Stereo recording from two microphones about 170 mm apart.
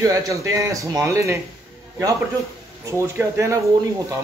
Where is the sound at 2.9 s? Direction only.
15° right (ahead or behind).